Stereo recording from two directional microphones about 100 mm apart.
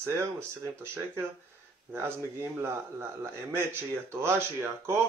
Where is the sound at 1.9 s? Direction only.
25° right (ahead or behind).